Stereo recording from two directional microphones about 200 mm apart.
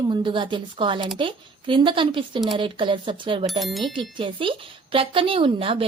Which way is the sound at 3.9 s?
25° right (ahead or behind).